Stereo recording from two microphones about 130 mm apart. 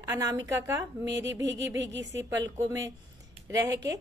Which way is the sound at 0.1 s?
25° right (ahead or behind).